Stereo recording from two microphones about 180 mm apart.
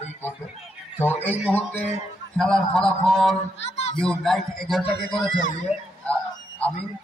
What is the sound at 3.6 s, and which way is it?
Speech, 35° left (ahead or behind).